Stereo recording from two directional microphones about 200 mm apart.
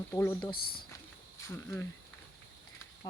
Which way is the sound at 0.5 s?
50° left (ahead or behind).